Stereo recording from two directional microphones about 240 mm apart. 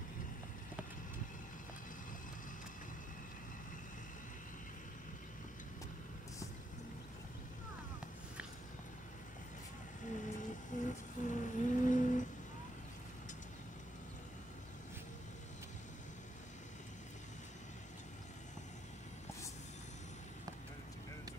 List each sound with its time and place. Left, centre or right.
10.0 s vehicle: left